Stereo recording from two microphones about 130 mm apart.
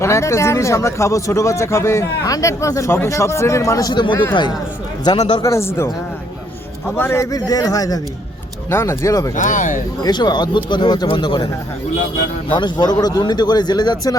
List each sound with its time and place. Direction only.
0.0 s speech: 20° left (ahead or behind)
5.1 s a man's voice: 30° left (ahead or behind)
5.4 s speech: 20° left (ahead or behind)
6.9 s speech: 20° left (ahead or behind)
9.3 s speech: 80° left
10.0 s a man's voice: 30° left (ahead or behind)
12.5 s a man's voice: 35° left (ahead or behind)